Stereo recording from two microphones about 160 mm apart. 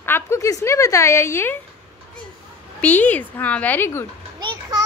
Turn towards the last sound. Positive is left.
turn(degrees=-25)  # may be behind; listen again after turning